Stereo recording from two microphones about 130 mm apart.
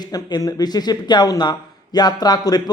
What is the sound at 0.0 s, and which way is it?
A woman's voice, 30° left (ahead or behind).